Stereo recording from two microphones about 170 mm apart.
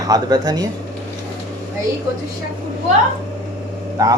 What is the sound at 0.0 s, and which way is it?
Speech, 20° right (ahead or behind).